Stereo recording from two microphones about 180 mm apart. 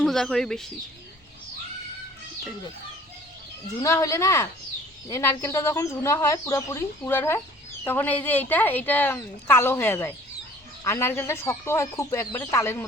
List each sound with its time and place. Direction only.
0.0 s speech: centre (ahead or behind)
3.8 s speech: 15° left (ahead or behind)